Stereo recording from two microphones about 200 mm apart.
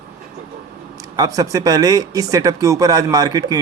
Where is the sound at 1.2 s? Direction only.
15° right (ahead or behind).